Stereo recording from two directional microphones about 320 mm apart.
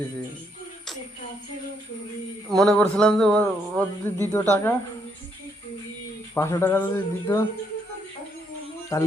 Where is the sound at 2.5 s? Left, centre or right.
Centre.